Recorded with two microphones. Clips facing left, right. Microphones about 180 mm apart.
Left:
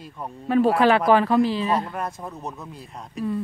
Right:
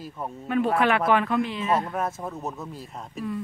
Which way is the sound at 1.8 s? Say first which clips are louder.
Right 1 dB; centre (ahead or behind).